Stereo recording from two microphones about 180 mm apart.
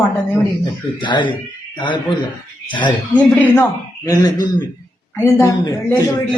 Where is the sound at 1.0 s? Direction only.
25° left (ahead or behind).